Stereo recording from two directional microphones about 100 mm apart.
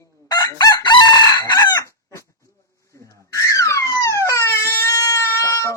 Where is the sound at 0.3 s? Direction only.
45° left (ahead or behind).